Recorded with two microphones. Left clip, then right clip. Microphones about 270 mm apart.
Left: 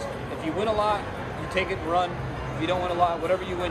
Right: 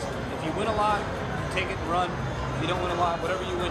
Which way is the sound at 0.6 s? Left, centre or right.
Left.